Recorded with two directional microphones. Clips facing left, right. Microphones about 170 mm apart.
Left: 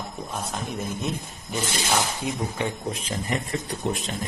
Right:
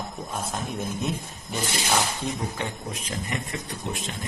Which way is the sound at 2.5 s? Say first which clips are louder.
Left 4 dB; 30° left (ahead or behind).